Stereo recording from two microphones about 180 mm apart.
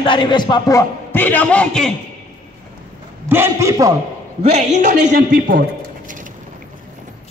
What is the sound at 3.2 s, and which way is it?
Speech, 10° right (ahead or behind).